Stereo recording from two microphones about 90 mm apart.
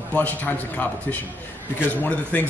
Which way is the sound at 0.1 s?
15° left (ahead or behind).